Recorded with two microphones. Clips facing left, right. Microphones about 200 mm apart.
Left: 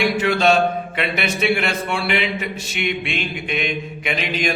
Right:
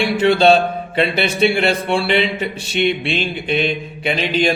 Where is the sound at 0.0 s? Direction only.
30° right (ahead or behind).